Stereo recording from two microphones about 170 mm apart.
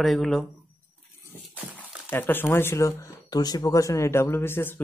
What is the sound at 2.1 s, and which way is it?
Speech, 10° left (ahead or behind).